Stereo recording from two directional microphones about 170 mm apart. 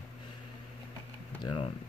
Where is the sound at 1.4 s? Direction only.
30° left (ahead or behind).